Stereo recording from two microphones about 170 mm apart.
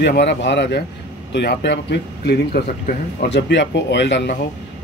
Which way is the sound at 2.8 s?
70° left (ahead or behind).